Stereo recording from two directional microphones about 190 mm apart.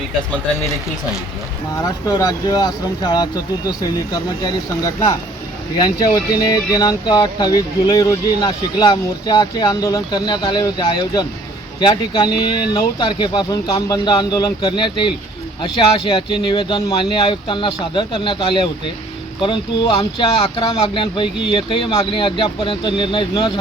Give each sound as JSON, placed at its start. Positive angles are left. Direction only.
{"t": 2.0, "sound": "speech", "side_deg": 20}
{"t": 6.5, "sound": "speech", "side_deg": 20}